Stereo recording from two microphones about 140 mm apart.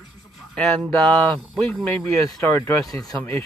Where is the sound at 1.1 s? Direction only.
35° right (ahead or behind).